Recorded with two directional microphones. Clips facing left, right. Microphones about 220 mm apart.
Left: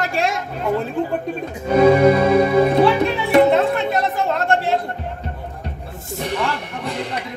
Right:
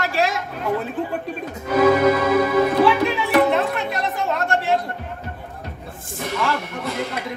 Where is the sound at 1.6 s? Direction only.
30° left (ahead or behind).